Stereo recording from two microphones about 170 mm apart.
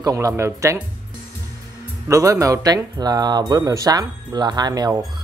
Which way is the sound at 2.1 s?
20° right (ahead or behind).